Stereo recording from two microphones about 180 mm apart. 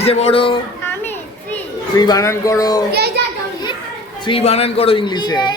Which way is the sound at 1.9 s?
20° left (ahead or behind).